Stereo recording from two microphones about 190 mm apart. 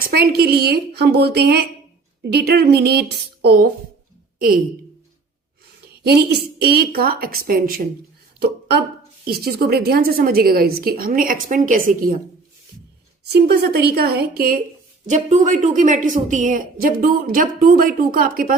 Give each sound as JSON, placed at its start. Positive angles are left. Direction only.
{"t": 0.0, "sound": "a woman's voice", "side_deg": -55}
{"t": 6.6, "sound": "a woman's voice", "side_deg": -55}
{"t": 13.2, "sound": "a woman's voice", "side_deg": -60}
{"t": 15.0, "sound": "a woman's voice", "side_deg": -40}